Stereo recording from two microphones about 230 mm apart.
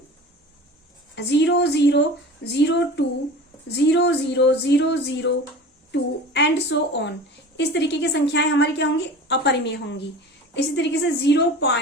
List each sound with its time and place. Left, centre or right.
1.1 s a woman's voice: left